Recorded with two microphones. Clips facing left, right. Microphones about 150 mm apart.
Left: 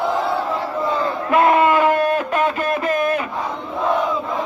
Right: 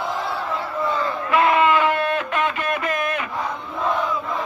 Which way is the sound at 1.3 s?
45° left (ahead or behind).